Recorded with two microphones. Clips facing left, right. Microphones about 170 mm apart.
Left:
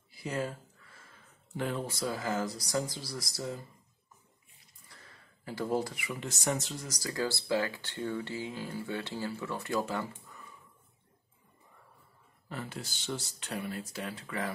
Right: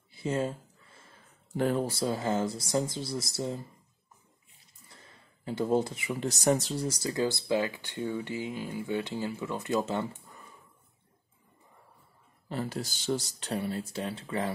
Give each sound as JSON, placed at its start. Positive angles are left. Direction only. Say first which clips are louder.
{"t": 0.1, "sound": "speech", "louder": "right 5 dB", "side_deg": -25}
{"t": 1.6, "sound": "speech", "louder": "right 6 dB", "side_deg": -35}
{"t": 4.8, "sound": "a sound", "louder": "right 2 dB", "side_deg": -25}
{"t": 6.1, "sound": "speech", "louder": "right 7 dB", "side_deg": -35}
{"t": 12.4, "sound": "speech", "louder": "right 7 dB", "side_deg": -35}